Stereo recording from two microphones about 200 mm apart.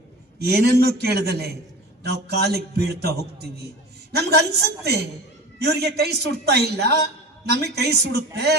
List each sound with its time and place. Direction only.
0.3 s a man's voice: 50° right (ahead or behind)